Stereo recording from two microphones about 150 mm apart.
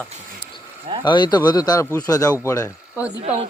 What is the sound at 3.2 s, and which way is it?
Speech, 45° right (ahead or behind).